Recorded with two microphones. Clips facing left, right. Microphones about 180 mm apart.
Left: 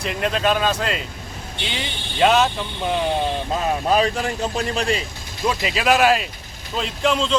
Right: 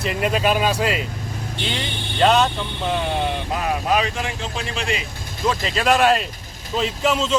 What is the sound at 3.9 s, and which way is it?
Speech, 35° left (ahead or behind).